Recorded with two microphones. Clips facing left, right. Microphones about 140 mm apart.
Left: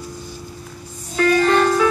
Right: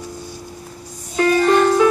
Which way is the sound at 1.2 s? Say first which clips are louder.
Right 1 dB; 15° right (ahead or behind).